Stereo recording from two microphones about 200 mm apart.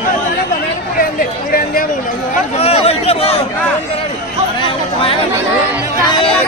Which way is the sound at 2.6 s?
30° left (ahead or behind).